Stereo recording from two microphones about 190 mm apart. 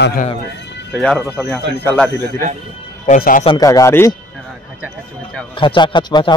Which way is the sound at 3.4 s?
20° left (ahead or behind).